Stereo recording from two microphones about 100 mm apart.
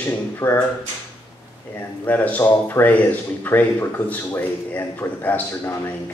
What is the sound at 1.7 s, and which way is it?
A man's voice, 20° left (ahead or behind).